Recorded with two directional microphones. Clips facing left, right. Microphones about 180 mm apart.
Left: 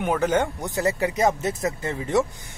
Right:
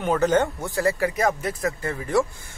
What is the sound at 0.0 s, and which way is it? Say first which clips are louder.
Speech: right 2 dB; 10° left (ahead or behind).